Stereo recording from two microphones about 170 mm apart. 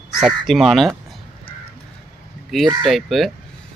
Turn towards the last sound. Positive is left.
turn(degrees=0)  # may be behind; listen again after turning